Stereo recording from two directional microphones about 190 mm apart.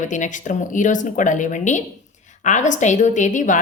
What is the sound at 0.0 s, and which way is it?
A woman's voice, 40° left (ahead or behind).